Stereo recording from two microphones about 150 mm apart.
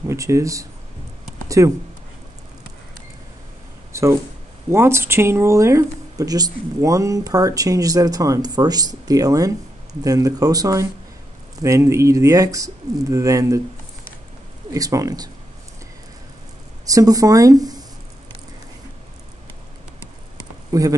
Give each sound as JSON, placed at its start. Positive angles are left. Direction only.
{"t": 0.1, "sound": "speech", "side_deg": -20}
{"t": 3.9, "sound": "a sound", "side_deg": -20}
{"t": 4.6, "sound": "speech", "side_deg": -15}
{"t": 14.7, "sound": "speech", "side_deg": -20}
{"t": 16.8, "sound": "speech", "side_deg": -25}
{"t": 20.7, "sound": "speech", "side_deg": -25}